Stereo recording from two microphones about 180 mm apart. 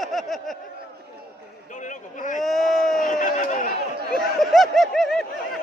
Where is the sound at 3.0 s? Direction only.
45° left (ahead or behind).